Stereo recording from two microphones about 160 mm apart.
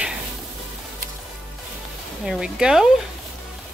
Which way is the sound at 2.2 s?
5° right (ahead or behind).